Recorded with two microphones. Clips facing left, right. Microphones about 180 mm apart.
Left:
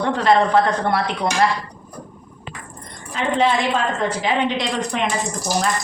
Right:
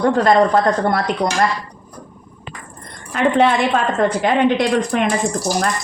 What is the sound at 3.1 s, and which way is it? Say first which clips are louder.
A woman's voice: right 4 dB; 60° right (ahead or behind).